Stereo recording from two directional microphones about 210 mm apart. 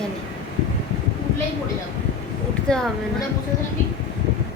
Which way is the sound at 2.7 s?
5° left (ahead or behind).